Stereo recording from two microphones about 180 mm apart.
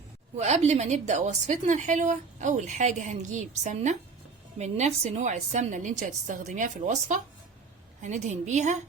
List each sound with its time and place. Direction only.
0.3 s a woman's voice: 40° right (ahead or behind)